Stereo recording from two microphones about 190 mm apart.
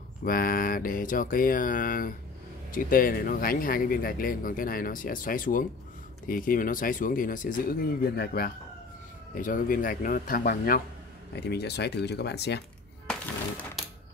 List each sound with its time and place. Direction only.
0.2 s speech: 50° left (ahead or behind)
13.0 s music: 5° left (ahead or behind)